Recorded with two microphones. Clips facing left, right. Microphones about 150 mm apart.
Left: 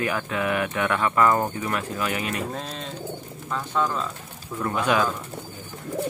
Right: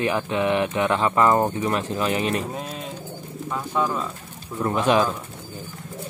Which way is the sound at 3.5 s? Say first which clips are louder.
Right 1 dB; 10° right (ahead or behind).